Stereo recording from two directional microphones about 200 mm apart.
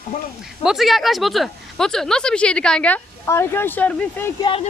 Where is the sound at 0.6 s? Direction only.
Centre (ahead or behind).